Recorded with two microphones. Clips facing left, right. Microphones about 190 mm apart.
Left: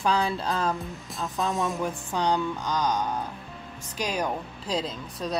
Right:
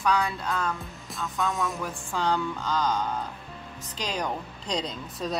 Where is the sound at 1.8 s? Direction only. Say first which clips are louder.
Left 2 dB; 20° left (ahead or behind).